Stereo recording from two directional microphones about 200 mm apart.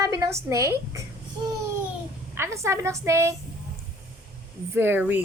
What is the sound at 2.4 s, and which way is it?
Speech, 15° right (ahead or behind).